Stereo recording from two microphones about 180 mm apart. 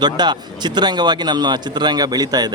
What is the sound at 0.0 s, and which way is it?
A man's voice, 25° right (ahead or behind).